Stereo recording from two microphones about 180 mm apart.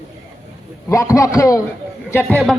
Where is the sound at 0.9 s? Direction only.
15° left (ahead or behind).